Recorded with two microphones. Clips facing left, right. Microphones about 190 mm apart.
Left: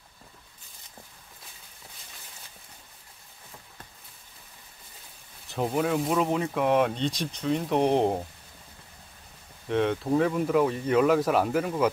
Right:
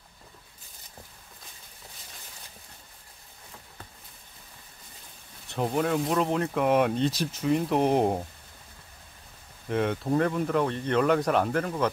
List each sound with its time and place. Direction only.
5.5 s speech: centre (ahead or behind)
9.7 s speech: centre (ahead or behind)